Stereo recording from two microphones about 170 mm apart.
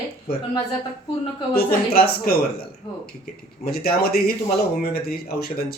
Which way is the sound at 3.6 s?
65° left (ahead or behind).